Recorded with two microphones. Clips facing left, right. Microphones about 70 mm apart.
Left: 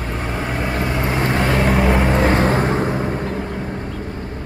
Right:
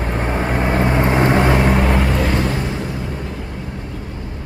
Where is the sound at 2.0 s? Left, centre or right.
Left.